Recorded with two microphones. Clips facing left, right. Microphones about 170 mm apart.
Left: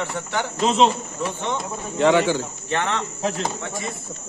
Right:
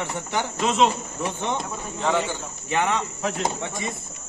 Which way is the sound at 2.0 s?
90° left.